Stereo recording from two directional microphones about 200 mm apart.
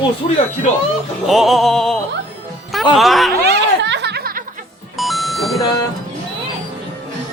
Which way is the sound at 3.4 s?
60° right (ahead or behind).